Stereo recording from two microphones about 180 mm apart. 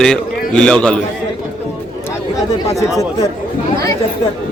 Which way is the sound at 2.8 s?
15° left (ahead or behind).